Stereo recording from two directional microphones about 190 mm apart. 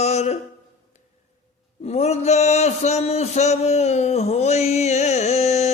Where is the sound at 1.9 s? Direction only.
35° left (ahead or behind).